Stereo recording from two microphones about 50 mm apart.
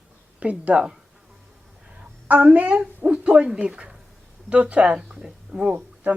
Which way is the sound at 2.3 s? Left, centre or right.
Right.